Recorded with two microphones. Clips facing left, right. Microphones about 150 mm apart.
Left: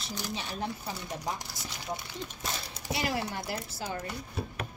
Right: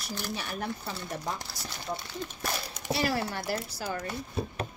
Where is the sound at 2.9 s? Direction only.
20° left (ahead or behind).